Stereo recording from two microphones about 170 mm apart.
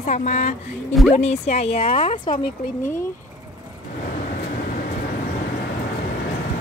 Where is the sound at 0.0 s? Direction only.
45° left (ahead or behind).